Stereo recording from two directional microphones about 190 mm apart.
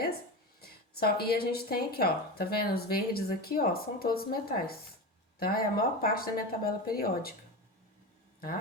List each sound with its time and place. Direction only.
0.6 s a woman's voice: 55° left (ahead or behind)